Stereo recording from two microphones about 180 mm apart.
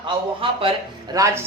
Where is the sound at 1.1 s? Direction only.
20° right (ahead or behind).